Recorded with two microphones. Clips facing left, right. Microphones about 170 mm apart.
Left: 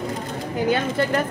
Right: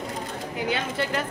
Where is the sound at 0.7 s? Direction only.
45° left (ahead or behind).